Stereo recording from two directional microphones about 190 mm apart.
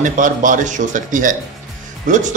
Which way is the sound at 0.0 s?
45° right (ahead or behind).